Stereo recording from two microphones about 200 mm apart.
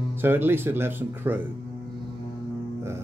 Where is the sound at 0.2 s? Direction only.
10° right (ahead or behind).